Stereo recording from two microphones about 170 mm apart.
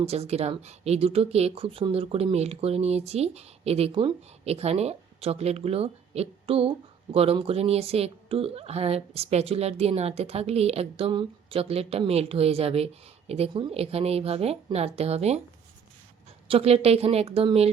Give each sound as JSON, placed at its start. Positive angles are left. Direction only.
{"t": 0.0, "sound": "speech", "side_deg": -35}
{"t": 16.5, "sound": "speech", "side_deg": -35}